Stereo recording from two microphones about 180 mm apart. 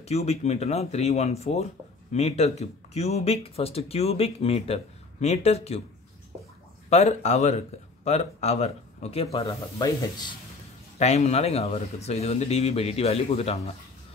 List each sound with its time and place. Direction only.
0.0 s speech: 35° left (ahead or behind)
6.9 s speech: 40° left (ahead or behind)
9.5 s speech: 20° left (ahead or behind)
11.0 s speech: 40° left (ahead or behind)